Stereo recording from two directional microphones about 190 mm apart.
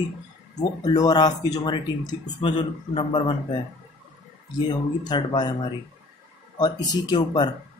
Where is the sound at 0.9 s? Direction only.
20° left (ahead or behind).